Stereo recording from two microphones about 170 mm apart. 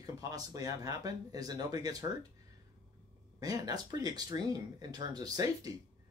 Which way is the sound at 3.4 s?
20° right (ahead or behind).